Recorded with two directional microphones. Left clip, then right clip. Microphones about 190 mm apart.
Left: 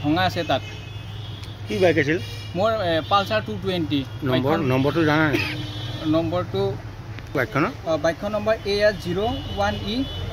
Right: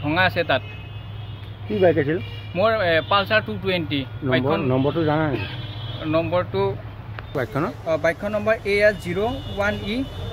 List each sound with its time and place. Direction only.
0.0 s speech: 5° right (ahead or behind)
1.8 s speech: 15° right (ahead or behind)
2.5 s speech: centre (ahead or behind)
8.6 s speech: 35° right (ahead or behind)
9.1 s speech: 15° right (ahead or behind)